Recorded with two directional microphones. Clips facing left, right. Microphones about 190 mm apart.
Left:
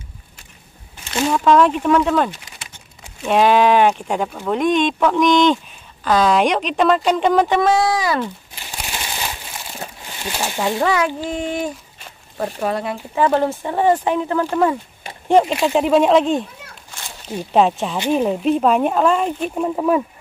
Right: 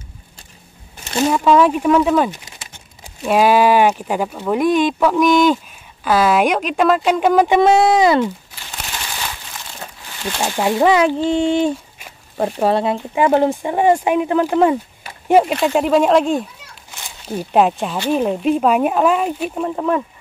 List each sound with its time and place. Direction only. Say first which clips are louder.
1.3 s speech: even; 5° right (ahead or behind)
7.6 s speech: right 5 dB; 25° right (ahead or behind)
8.7 s crumpling: left 1 dB; 15° left (ahead or behind)
10.4 s speech: right 4 dB; 20° right (ahead or behind)
13.1 s speech: right 2 dB; 15° right (ahead or behind)
19.5 s speech: left 4 dB; 5° left (ahead or behind)